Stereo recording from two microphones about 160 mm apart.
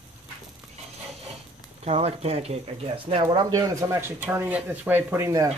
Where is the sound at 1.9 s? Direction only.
40° right (ahead or behind); by 5.5 s 20° right (ahead or behind).